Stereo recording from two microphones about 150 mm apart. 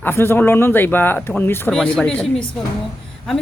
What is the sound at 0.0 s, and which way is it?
A woman's voice, 15° left (ahead or behind).